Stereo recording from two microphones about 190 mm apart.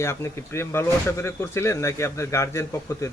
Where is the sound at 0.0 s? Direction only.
15° left (ahead or behind).